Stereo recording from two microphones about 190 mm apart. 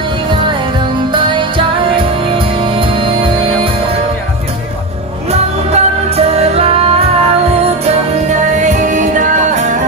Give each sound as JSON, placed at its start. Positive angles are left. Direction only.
{"t": 2.3, "sound": "music", "side_deg": -25}
{"t": 5.3, "sound": "music", "side_deg": -35}
{"t": 8.3, "sound": "music", "side_deg": -40}